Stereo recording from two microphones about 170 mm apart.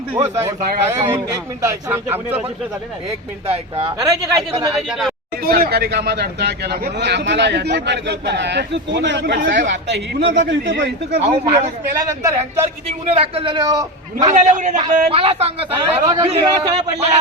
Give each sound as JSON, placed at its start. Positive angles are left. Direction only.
{"t": 0.2, "sound": "a man's voice", "side_deg": -15}
{"t": 3.4, "sound": "a man's voice", "side_deg": -35}
{"t": 4.0, "sound": "speech", "side_deg": -20}
{"t": 4.7, "sound": "speech", "side_deg": -5}
{"t": 5.4, "sound": "speech", "side_deg": -65}
{"t": 11.2, "sound": "a man's voice", "side_deg": -35}
{"t": 12.0, "sound": "a man's voice", "side_deg": -15}
{"t": 13.1, "sound": "a man's voice", "side_deg": -35}
{"t": 14.3, "sound": "a man's voice", "side_deg": -45}
{"t": 16.0, "sound": "speech", "side_deg": -20}
{"t": 16.7, "sound": "a man's voice", "side_deg": -40}